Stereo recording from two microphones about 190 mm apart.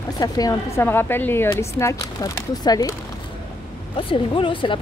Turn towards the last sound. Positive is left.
turn(degrees=25)  # may be behind; listen again after turning